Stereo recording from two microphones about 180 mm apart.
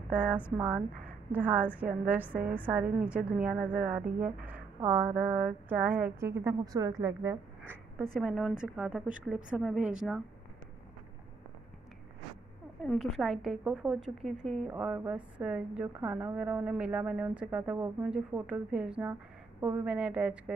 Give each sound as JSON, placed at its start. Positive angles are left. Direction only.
{"t": 0.1, "sound": "a woman's voice", "side_deg": -10}
{"t": 12.8, "sound": "a woman's voice", "side_deg": 0}